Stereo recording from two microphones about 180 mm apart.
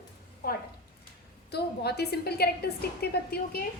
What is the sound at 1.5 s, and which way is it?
A woman's voice, 65° left (ahead or behind).